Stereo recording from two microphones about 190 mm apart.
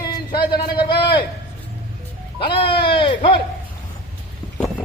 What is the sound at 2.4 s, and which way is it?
Speech, 30° left (ahead or behind).